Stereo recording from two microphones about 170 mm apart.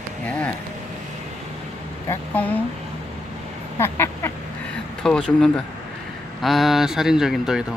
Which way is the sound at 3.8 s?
15° left (ahead or behind).